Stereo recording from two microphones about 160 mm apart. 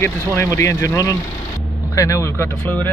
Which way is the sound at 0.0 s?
15° left (ahead or behind).